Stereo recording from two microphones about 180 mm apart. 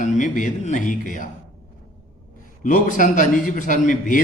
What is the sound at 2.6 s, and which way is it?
Speech, 45° left (ahead or behind).